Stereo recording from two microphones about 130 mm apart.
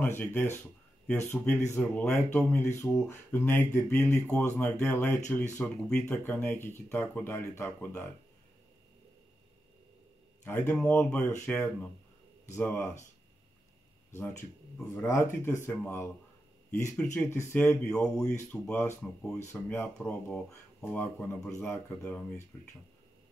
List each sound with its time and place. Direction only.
0.0 s speech: 15° left (ahead or behind)
10.4 s speech: 15° left (ahead or behind)
14.1 s speech: 20° left (ahead or behind)
17.3 s speech: 20° left (ahead or behind)
17.8 s speech: 5° left (ahead or behind)
18.5 s speech: 15° left (ahead or behind)
20.0 s speech: 5° left (ahead or behind)